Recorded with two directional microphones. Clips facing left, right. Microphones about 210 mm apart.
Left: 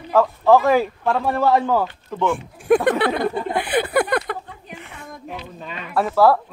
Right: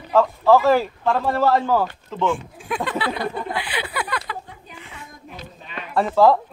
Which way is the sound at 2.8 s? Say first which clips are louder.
Left 6 dB; 60° left (ahead or behind).